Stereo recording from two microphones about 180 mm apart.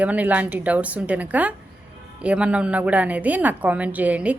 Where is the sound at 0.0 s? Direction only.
10° right (ahead or behind).